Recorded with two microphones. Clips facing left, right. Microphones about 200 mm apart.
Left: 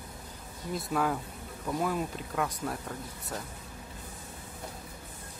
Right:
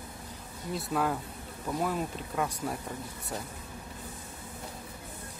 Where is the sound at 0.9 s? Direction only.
Centre (ahead or behind).